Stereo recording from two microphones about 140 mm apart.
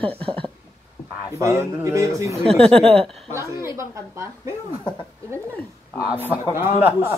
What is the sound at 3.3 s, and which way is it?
Speech, 20° right (ahead or behind).